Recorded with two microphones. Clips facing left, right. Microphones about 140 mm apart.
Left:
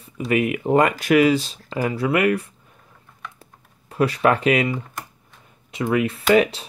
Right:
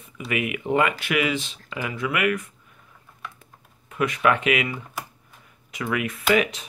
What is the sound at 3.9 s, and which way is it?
Speech, 35° left (ahead or behind).